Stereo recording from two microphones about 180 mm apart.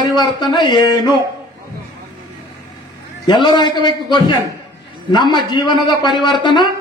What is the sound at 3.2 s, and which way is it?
A man's voice, 25° left (ahead or behind).